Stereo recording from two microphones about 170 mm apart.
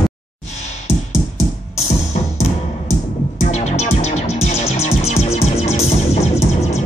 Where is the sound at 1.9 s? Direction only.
40° left (ahead or behind).